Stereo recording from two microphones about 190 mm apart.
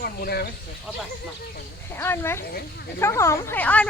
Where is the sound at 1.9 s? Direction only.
10° left (ahead or behind).